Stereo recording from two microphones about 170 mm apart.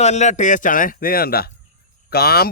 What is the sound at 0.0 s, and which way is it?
Speech, 40° left (ahead or behind).